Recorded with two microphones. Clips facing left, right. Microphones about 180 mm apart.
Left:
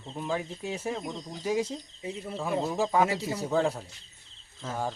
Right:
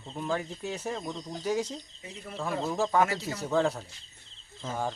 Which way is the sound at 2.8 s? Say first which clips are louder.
Right 1 dB; 10° left (ahead or behind).